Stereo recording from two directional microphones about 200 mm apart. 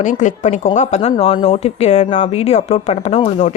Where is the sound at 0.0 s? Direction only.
40° left (ahead or behind).